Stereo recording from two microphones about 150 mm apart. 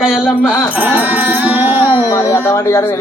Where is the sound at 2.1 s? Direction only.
15° left (ahead or behind).